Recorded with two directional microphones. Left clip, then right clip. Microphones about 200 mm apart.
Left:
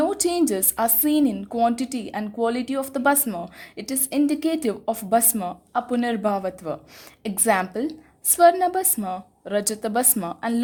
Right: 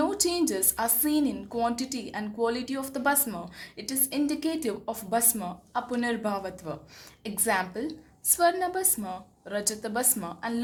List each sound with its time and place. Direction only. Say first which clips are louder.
0.0 s a woman's voice: left 5 dB; 45° left (ahead or behind)